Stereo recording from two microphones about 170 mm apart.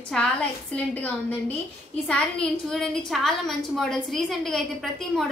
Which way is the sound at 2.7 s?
Centre (ahead or behind).